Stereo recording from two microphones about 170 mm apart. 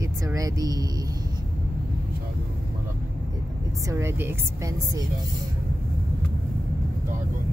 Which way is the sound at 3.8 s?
15° right (ahead or behind).